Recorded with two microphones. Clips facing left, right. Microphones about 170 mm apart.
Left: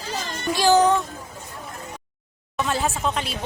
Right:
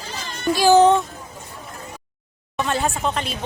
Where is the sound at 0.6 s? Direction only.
10° right (ahead or behind).